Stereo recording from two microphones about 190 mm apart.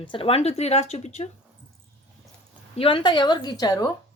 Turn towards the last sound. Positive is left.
turn(degrees=20)  # may be behind; listen again after turning